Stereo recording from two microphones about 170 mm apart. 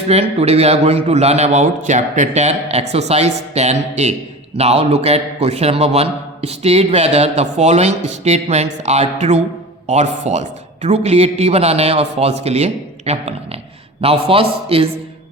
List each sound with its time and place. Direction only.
0.1 s a man's voice: 40° right (ahead or behind)